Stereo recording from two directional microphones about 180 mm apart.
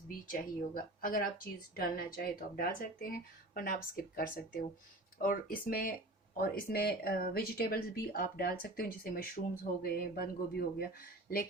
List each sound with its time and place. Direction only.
0.1 s speech: 50° left (ahead or behind)